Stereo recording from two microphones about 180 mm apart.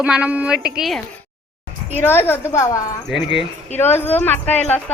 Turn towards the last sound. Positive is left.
turn(degrees=10)  # may be behind; listen again after turning